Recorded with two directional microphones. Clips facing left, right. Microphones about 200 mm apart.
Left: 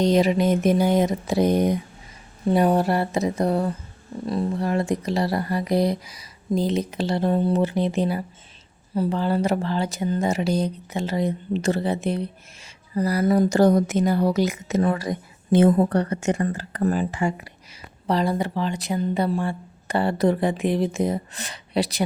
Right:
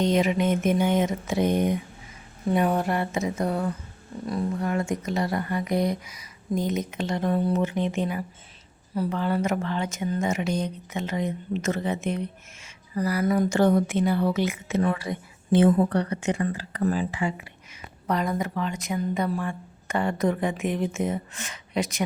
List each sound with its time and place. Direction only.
0.0 s speech: 35° left (ahead or behind)
18.1 s speech: 30° left (ahead or behind)